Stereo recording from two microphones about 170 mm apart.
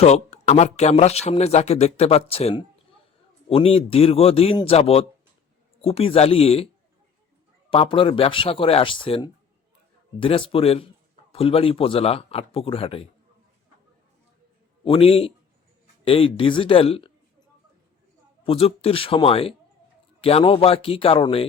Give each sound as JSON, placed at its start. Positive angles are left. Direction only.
{"t": 0.0, "sound": "speech", "side_deg": 40}
{"t": 7.7, "sound": "speech", "side_deg": 30}
{"t": 14.8, "sound": "speech", "side_deg": 35}
{"t": 18.4, "sound": "speech", "side_deg": 35}